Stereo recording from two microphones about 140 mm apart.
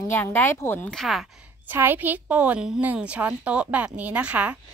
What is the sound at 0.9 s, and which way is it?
Speech, centre (ahead or behind).